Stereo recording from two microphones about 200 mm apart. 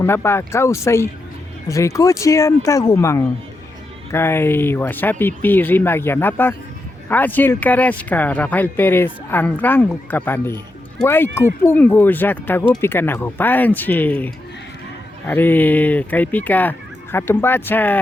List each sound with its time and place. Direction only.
0.0 s speech: 10° left (ahead or behind)